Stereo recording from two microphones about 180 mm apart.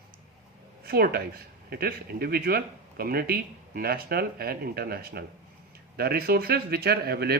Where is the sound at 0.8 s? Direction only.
60° right (ahead or behind).